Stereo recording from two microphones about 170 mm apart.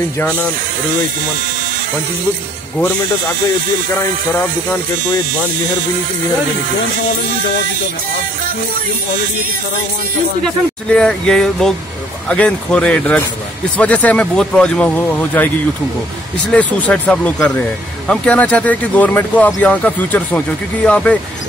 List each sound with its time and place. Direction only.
10.4 s speech: 5° left (ahead or behind)